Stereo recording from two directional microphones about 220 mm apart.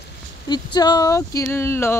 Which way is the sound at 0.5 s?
20° left (ahead or behind).